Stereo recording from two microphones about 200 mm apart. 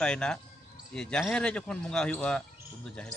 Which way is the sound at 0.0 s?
5° left (ahead or behind).